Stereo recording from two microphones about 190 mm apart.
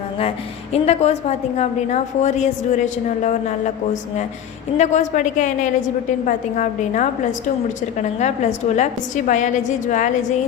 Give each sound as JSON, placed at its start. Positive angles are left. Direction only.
{"t": 0.2, "sound": "a woman's voice", "side_deg": 35}
{"t": 4.8, "sound": "a woman's voice", "side_deg": 40}